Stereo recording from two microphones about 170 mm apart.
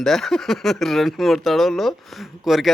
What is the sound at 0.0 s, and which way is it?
Speech, centre (ahead or behind).